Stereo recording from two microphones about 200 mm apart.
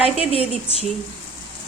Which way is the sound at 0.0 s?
30° left (ahead or behind).